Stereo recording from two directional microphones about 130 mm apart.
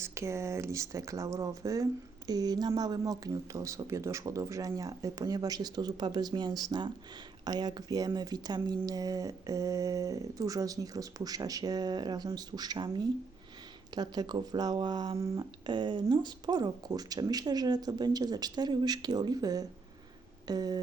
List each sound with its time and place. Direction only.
0.0 s speech: 20° right (ahead or behind)